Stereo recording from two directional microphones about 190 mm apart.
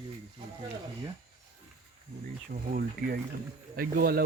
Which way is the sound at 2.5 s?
50° right (ahead or behind).